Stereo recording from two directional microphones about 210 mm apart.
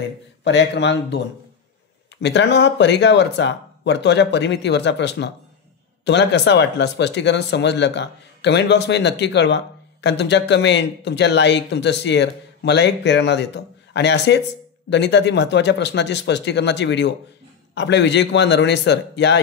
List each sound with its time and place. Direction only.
0.4 s speech: 55° left (ahead or behind)
2.2 s speech: 55° left (ahead or behind)